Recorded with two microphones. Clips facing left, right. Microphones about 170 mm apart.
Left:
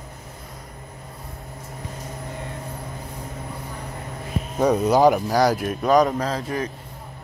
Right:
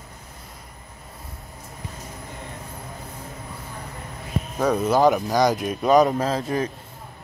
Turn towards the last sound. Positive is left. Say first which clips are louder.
# right 2 dB
turn(degrees=-25)  # may be behind; listen again after turning